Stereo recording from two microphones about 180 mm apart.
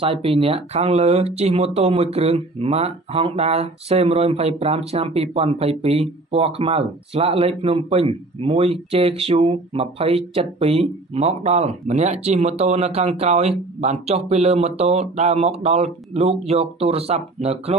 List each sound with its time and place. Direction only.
0.0 s speech: 30° right (ahead or behind)